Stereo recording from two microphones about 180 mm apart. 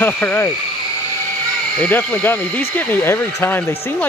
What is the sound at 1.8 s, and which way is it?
Speech, 10° left (ahead or behind).